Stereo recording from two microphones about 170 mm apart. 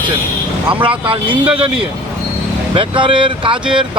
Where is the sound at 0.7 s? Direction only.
30° right (ahead or behind).